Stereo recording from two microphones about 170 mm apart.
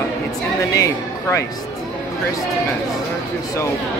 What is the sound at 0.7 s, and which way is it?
Speech, 20° left (ahead or behind).